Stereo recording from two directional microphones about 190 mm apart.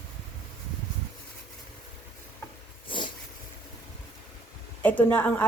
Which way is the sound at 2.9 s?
25° left (ahead or behind).